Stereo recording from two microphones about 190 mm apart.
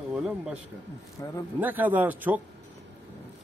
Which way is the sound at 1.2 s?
15° left (ahead or behind).